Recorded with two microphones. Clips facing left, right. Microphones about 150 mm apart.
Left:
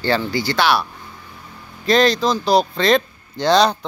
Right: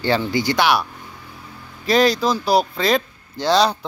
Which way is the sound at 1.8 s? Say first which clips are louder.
Left 1 dB; 10° right (ahead or behind).